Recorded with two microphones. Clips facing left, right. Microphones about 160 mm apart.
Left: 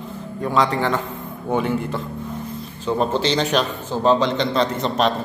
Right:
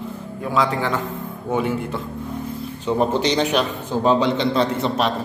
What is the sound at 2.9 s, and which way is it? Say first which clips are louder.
A man's voice: right 1 dB; 15° right (ahead or behind).